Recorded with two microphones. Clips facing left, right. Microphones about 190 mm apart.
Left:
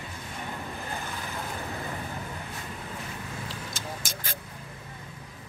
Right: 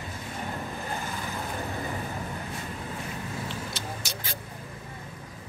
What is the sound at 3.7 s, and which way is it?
Vehicle, 50° left (ahead or behind).